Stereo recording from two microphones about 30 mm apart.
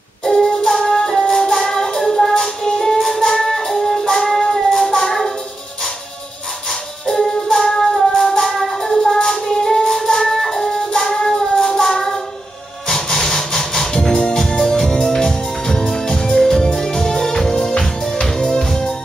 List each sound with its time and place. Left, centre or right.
0.2 s music: centre
6.7 s music: centre